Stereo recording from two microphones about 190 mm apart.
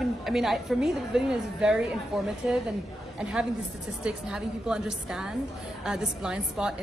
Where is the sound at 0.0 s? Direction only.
Centre (ahead or behind).